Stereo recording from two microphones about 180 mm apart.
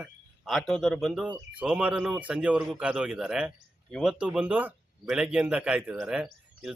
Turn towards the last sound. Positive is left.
turn(degrees=-5)  # may be behind; listen again after turning